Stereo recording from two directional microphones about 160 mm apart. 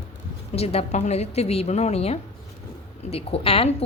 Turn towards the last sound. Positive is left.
turn(degrees=35)  # may be behind; listen again after turning